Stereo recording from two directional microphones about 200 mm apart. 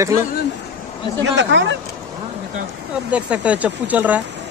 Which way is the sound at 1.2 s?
65° right (ahead or behind).